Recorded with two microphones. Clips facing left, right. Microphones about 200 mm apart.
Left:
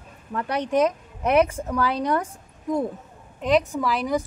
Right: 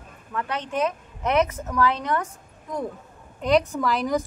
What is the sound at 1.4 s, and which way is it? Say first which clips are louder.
A woman's voice: right 1 dB; 30° left (ahead or behind).